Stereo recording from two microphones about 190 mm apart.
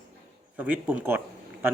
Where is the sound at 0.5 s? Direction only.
10° right (ahead or behind).